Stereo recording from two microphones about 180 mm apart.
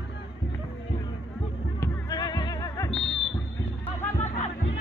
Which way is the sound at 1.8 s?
20° left (ahead or behind).